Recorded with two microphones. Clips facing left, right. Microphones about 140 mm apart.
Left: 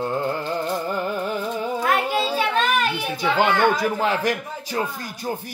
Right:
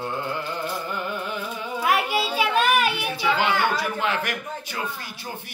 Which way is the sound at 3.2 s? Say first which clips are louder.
Left 4 dB; 45° left (ahead or behind).